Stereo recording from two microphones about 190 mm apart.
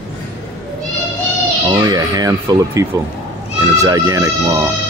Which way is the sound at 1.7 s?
20° right (ahead or behind).